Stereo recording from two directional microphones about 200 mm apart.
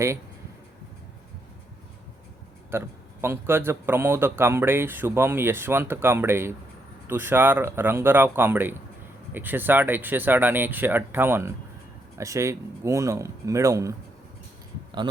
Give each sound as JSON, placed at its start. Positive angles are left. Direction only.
{"t": 2.6, "sound": "speech", "side_deg": -10}
{"t": 15.0, "sound": "a man's voice", "side_deg": -25}